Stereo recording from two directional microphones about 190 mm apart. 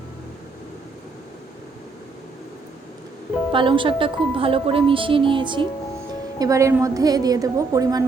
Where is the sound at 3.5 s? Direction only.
25° right (ahead or behind).